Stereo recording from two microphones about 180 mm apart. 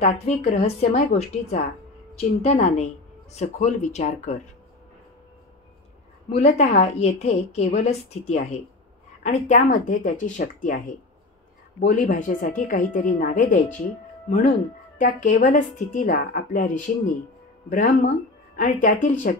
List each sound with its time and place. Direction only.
0.0 s a woman's voice: 35° left (ahead or behind)
6.2 s a woman's voice: 40° left (ahead or behind)
11.8 s a woman's voice: 50° left (ahead or behind)
15.0 s a woman's voice: 45° left (ahead or behind)